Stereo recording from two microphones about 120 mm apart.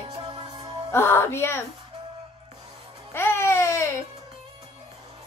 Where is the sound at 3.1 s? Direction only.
20° left (ahead or behind).